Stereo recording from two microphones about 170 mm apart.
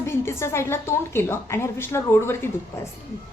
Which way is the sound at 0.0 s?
15° left (ahead or behind).